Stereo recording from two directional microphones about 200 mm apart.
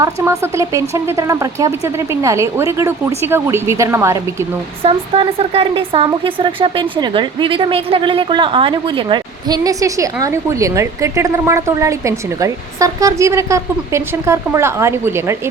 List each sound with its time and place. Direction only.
0.0 s speech: 15° right (ahead or behind)
4.8 s speech: 30° right (ahead or behind); by 15.4 s 15° right (ahead or behind)